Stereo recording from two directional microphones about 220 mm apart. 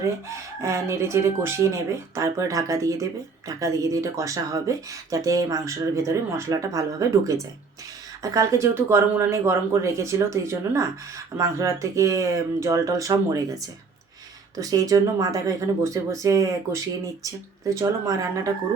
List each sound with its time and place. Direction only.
0.0 s speech: 15° right (ahead or behind)